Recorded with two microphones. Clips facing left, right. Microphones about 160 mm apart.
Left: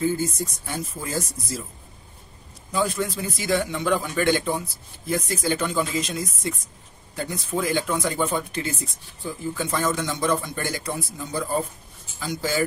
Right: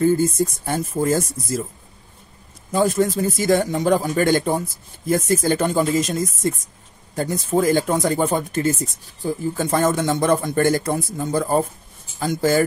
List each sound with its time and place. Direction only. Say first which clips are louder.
0.0 s speech: right 7 dB; 50° right (ahead or behind)
2.7 s speech: right 7 dB; 45° right (ahead or behind)